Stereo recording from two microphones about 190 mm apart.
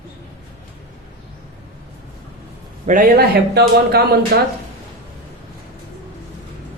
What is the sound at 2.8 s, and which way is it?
A man's voice, 45° right (ahead or behind).